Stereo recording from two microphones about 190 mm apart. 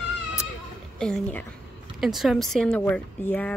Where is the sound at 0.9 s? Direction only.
5° left (ahead or behind).